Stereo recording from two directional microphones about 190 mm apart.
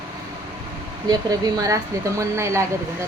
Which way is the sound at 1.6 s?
20° right (ahead or behind).